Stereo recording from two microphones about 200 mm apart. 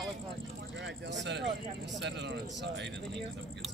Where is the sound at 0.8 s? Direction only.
65° right (ahead or behind).